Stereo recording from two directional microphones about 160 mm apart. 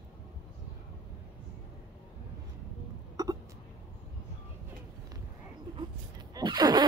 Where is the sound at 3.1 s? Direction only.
20° right (ahead or behind).